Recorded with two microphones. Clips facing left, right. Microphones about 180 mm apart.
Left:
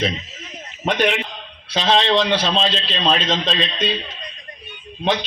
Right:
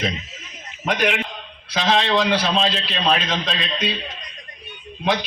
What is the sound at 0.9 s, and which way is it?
A man's voice, 30° left (ahead or behind).